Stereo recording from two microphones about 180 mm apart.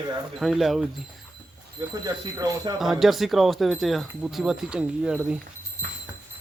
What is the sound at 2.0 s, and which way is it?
Speech, 20° right (ahead or behind).